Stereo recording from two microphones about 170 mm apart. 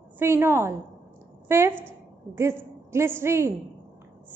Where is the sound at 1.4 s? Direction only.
15° right (ahead or behind).